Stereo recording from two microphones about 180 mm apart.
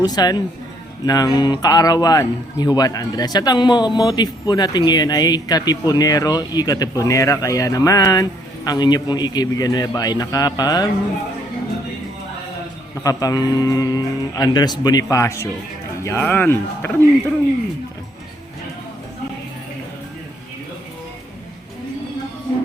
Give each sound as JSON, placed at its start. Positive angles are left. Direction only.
{"t": 0.0, "sound": "speech", "side_deg": 20}
{"t": 13.0, "sound": "speech", "side_deg": 20}